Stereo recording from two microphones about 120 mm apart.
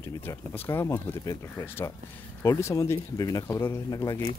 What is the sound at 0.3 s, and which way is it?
Speech, 25° left (ahead or behind).